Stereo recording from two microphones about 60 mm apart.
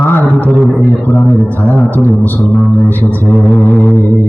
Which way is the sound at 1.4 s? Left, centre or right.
Left.